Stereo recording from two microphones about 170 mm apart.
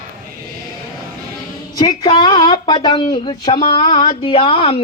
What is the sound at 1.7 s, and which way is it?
A woman's voice, 25° left (ahead or behind).